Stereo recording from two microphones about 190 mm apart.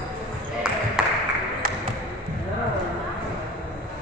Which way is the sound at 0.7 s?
5° right (ahead or behind).